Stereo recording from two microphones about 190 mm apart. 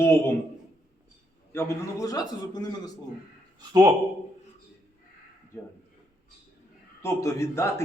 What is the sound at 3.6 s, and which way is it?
Speech, 20° right (ahead or behind).